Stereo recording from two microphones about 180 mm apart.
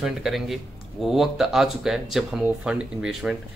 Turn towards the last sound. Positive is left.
turn(degrees=-5)  # may be behind; listen again after turning